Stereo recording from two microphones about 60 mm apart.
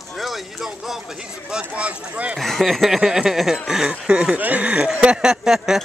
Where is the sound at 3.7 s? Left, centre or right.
Centre.